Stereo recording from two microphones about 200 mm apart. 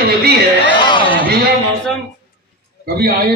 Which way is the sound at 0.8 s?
25° left (ahead or behind).